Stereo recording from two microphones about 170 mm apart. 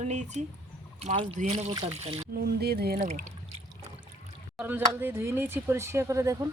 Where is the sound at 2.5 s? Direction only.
65° right (ahead or behind).